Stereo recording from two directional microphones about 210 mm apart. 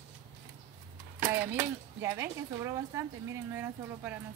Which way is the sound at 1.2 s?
10° right (ahead or behind).